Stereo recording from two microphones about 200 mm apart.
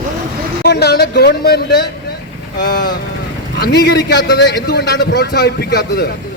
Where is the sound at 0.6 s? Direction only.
55° left (ahead or behind).